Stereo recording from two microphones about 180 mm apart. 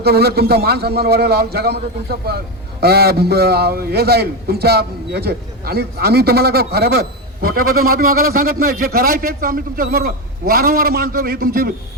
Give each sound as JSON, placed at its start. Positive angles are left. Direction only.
{"t": 0.0, "sound": "a man's voice", "side_deg": -60}